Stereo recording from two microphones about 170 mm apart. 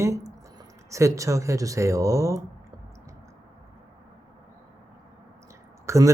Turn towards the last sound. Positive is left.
turn(degrees=-15)  # may be behind; listen again after turning